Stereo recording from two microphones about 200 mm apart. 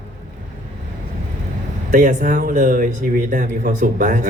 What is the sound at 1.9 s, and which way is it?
Speech, 40° right (ahead or behind).